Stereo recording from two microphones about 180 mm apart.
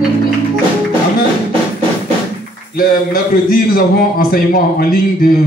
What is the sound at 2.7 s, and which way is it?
Speech, 55° left (ahead or behind).